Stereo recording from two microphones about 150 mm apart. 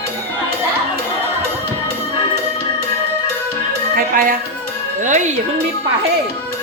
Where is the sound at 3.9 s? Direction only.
70° right (ahead or behind).